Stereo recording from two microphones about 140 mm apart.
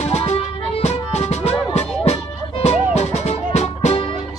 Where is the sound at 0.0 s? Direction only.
50° left (ahead or behind).